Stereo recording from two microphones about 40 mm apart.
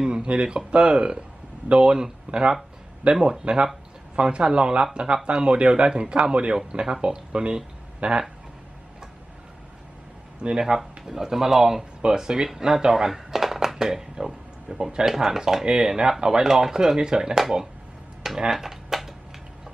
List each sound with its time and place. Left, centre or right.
0.0 s speech: right
10.8 s speech: centre
18.2 s a sound: centre